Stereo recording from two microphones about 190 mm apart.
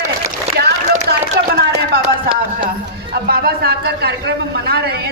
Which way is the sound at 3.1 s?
55° right (ahead or behind).